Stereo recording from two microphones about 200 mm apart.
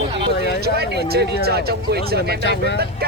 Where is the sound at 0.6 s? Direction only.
55° right (ahead or behind).